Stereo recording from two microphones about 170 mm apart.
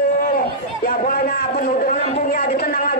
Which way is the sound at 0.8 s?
60° left (ahead or behind).